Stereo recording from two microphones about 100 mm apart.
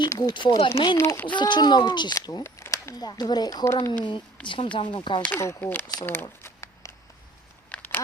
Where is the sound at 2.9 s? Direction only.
45° left (ahead or behind).